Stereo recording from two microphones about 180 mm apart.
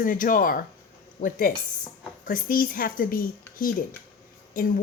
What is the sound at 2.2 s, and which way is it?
Speech, 50° left (ahead or behind).